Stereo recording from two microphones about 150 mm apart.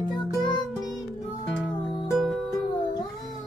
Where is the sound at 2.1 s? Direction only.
Centre (ahead or behind).